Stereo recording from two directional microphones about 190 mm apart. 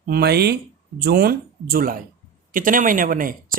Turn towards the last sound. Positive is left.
turn(degrees=-45)  # may be behind; listen again after turning